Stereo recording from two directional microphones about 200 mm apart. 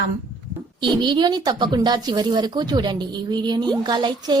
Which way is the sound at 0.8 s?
25° right (ahead or behind).